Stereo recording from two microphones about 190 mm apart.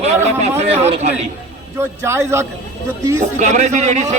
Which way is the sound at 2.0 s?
15° right (ahead or behind).